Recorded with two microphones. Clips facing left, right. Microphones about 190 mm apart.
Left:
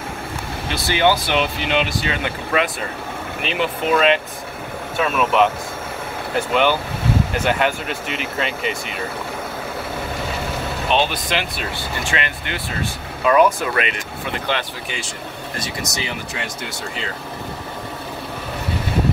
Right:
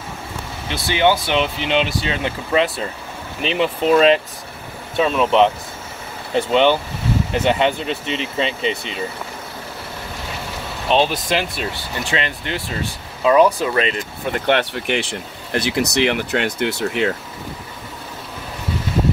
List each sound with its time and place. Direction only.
0.8 s speech: 20° right (ahead or behind)
10.9 s speech: 35° right (ahead or behind)
14.5 s speech: 65° right (ahead or behind)